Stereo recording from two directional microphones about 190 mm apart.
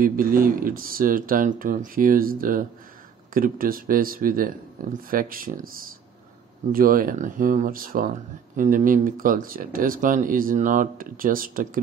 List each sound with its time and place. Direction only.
0.0 s speech: 45° right (ahead or behind)
6.7 s speech: 50° right (ahead or behind)